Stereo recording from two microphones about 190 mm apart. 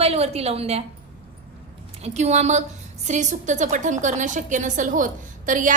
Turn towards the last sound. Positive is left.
turn(degrees=-45)  # may be behind; listen again after turning